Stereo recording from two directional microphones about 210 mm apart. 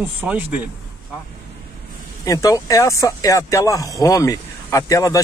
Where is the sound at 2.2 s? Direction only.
15° left (ahead or behind).